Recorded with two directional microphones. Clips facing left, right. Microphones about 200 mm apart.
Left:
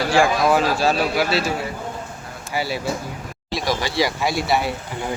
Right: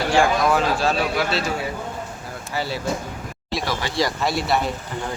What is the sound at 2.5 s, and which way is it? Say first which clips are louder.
A man's voice: left 1 dB; 10° left (ahead or behind).